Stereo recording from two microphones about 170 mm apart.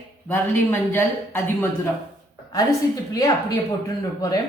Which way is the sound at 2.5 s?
20° left (ahead or behind).